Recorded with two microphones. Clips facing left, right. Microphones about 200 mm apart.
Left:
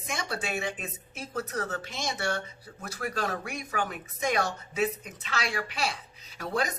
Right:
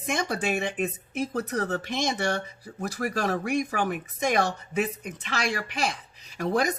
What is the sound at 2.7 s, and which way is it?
Speech, 50° right (ahead or behind).